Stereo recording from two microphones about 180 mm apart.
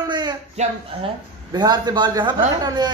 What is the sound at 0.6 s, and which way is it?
Speech, 40° right (ahead or behind).